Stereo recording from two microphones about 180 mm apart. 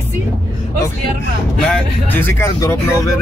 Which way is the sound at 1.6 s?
10° left (ahead or behind).